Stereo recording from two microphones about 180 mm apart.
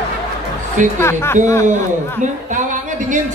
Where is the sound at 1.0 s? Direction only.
15° left (ahead or behind).